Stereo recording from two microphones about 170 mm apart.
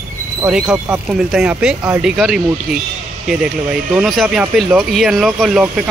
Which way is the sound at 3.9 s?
5° right (ahead or behind).